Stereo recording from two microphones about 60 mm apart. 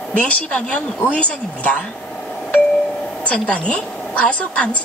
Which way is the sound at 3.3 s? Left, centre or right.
Centre.